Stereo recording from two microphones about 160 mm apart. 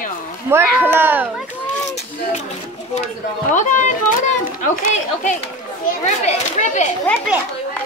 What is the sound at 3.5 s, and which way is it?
A child's voice, 50° left (ahead or behind).